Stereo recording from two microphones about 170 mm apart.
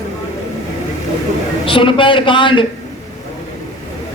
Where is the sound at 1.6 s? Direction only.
30° left (ahead or behind).